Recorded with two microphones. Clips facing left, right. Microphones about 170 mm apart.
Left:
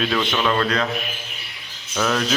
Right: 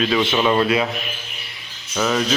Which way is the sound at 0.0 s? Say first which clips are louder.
Right 3 dB; 5° right (ahead or behind).